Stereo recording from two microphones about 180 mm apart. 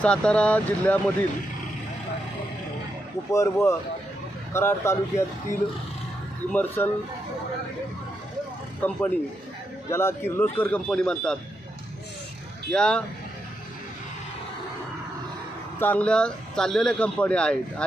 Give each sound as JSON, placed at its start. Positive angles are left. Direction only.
{"t": 0.0, "sound": "a man's voice", "side_deg": 5}
{"t": 3.3, "sound": "a man's voice", "side_deg": 15}
{"t": 6.5, "sound": "a man's voice", "side_deg": 10}
{"t": 8.8, "sound": "a man's voice", "side_deg": 10}
{"t": 12.7, "sound": "speech", "side_deg": 5}
{"t": 15.8, "sound": "speech", "side_deg": 10}